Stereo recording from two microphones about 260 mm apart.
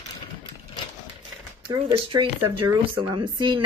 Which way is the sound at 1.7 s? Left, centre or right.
Centre.